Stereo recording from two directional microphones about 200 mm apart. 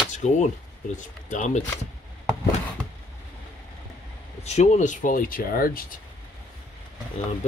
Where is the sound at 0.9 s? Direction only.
40° left (ahead or behind).